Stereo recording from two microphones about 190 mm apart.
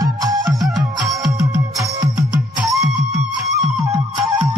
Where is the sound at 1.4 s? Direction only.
15° right (ahead or behind).